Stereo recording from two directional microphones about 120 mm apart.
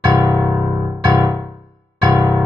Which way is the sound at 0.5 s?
25° right (ahead or behind).